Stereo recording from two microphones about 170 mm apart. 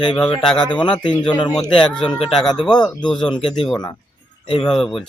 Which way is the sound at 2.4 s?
30° left (ahead or behind).